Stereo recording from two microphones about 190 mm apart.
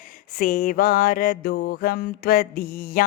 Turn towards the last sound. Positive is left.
turn(degrees=50)  # may be behind; listen again after turning